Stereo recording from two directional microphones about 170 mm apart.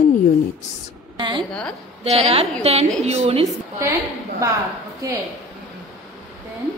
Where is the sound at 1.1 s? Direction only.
30° right (ahead or behind).